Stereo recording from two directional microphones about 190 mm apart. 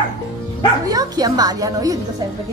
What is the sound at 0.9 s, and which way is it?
Speech, 20° right (ahead or behind).